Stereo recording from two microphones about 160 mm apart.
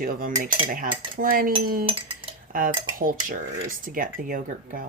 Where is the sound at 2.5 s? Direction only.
60° right (ahead or behind).